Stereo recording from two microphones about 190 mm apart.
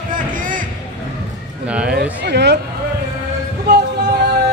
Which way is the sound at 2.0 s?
65° right (ahead or behind).